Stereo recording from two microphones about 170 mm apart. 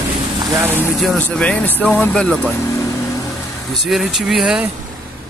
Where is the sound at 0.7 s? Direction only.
10° right (ahead or behind).